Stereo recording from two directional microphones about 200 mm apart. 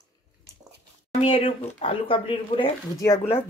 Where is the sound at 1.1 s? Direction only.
30° left (ahead or behind).